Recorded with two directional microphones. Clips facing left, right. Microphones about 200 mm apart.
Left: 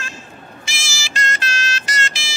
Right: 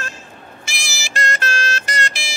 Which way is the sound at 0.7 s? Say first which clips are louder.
Right 2 dB; 55° right (ahead or behind).